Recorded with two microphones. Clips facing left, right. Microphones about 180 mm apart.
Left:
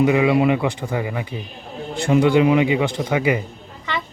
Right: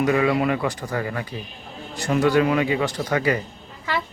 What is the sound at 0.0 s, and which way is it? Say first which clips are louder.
A man's voice: left 4 dB; 15° left (ahead or behind).